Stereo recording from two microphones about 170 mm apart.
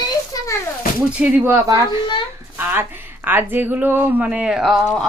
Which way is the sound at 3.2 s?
10° right (ahead or behind).